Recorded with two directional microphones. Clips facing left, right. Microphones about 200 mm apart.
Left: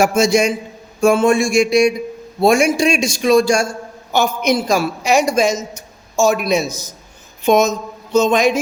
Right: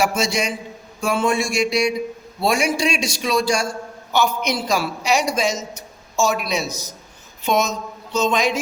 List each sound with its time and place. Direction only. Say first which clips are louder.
0.0 s a woman's voice: left 7 dB; 45° left (ahead or behind)